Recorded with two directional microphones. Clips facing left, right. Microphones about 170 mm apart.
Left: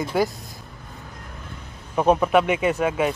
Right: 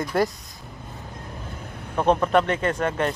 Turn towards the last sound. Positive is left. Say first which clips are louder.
# left 2 dB
turn(degrees=5)  # may be behind; listen again after turning